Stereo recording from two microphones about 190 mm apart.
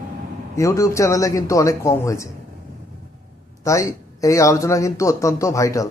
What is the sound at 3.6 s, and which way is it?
Speech, 15° left (ahead or behind).